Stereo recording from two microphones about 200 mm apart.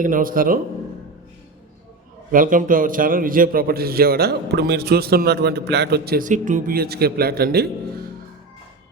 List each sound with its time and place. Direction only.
0.0 s a man's voice: 45° right (ahead or behind)
2.3 s a man's voice: 45° right (ahead or behind)